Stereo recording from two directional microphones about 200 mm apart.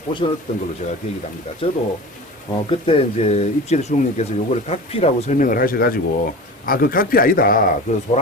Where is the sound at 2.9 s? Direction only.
30° left (ahead or behind).